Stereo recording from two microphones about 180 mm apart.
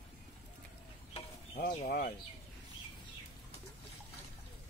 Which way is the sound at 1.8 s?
50° left (ahead or behind).